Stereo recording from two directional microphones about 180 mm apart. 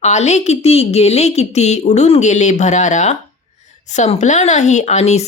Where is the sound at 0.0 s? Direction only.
40° left (ahead or behind).